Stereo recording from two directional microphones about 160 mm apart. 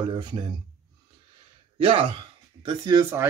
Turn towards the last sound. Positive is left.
turn(degrees=-20)  # may be behind; listen again after turning